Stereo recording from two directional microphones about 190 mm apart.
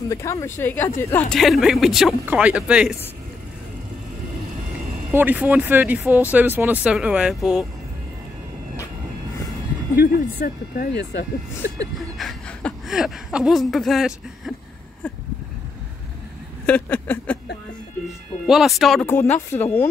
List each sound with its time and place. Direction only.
0.1 s speech: 15° left (ahead or behind)
1.3 s speech: centre (ahead or behind)
5.1 s speech: 10° right (ahead or behind)
9.9 s speech: 50° left (ahead or behind)
12.2 s speech: 5° left (ahead or behind)
16.6 s speech: 10° left (ahead or behind)
18.5 s speech: centre (ahead or behind)
19.3 s speech: 10° left (ahead or behind)